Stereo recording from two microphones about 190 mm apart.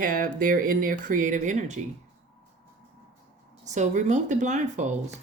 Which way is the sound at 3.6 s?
40° right (ahead or behind).